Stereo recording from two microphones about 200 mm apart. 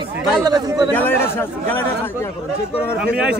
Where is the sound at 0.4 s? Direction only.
20° right (ahead or behind).